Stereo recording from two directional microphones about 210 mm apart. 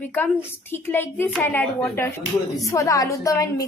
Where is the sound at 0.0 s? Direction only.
10° left (ahead or behind).